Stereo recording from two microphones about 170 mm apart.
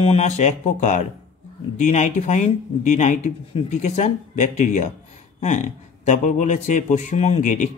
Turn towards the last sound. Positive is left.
turn(degrees=45)  # may be behind; listen again after turning